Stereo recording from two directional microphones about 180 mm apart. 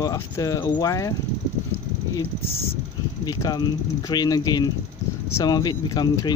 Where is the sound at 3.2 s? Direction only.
20° left (ahead or behind).